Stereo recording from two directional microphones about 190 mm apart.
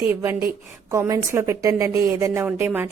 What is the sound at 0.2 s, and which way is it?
A woman's voice, 15° right (ahead or behind).